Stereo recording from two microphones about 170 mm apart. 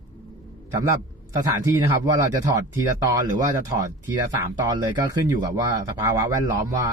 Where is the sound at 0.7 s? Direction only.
20° right (ahead or behind).